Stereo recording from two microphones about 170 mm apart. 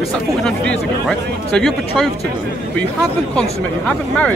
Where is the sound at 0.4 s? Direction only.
5° left (ahead or behind).